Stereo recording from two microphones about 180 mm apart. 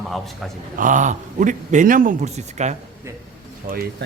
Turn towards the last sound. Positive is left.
turn(degrees=-55)  # may be behind; listen again after turning